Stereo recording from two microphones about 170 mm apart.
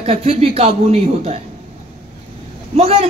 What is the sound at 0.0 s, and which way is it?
A man's voice, 35° right (ahead or behind).